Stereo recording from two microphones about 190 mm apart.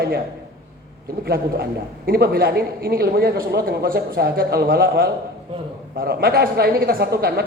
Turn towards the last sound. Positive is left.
turn(degrees=-55)  # may be behind; listen again after turning